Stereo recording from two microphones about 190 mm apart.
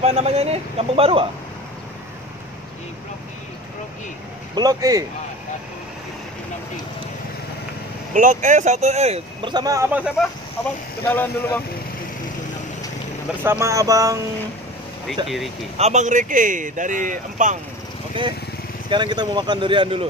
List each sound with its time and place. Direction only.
0.0 s speech: 35° right (ahead or behind)
4.6 s speech: 20° right (ahead or behind)
8.1 s speech: 40° right (ahead or behind); by 10.1 s 10° right (ahead or behind)
10.6 s speech: 10° left (ahead or behind)
13.4 s speech: 15° right (ahead or behind)
15.2 s speech: centre (ahead or behind)
15.8 s speech: 40° right (ahead or behind)
18.9 s speech: 25° right (ahead or behind)